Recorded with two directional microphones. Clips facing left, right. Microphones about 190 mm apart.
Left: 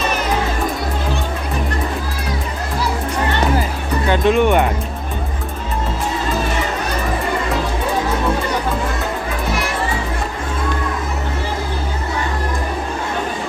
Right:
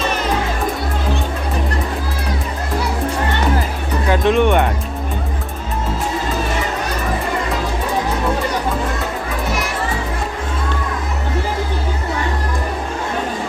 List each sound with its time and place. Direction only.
4.1 s speech: centre (ahead or behind)